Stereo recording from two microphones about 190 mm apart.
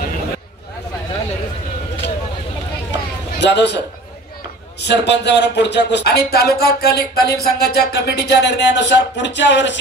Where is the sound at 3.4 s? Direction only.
65° left (ahead or behind).